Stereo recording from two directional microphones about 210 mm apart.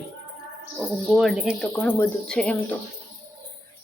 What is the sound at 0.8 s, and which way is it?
Speech, centre (ahead or behind).